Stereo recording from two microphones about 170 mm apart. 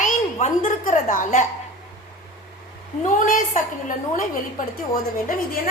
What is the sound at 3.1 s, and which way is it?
A woman's voice, 50° left (ahead or behind).